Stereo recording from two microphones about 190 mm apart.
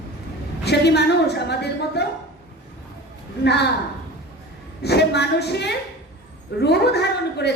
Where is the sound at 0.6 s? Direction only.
60° left (ahead or behind).